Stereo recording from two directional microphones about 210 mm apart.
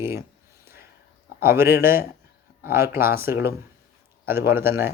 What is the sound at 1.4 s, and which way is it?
Speech, 10° right (ahead or behind).